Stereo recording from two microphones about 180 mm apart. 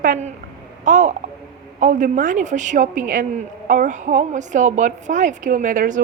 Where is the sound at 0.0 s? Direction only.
45° right (ahead or behind).